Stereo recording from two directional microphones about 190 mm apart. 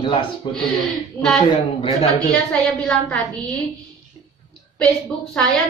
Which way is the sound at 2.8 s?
5° left (ahead or behind).